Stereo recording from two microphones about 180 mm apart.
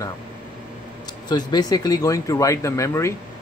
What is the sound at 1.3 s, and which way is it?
Speech, 25° left (ahead or behind).